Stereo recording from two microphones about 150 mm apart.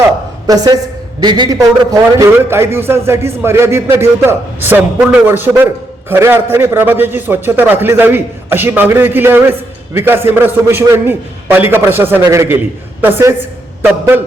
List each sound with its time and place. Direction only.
0.4 s a woman's voice: 25° right (ahead or behind)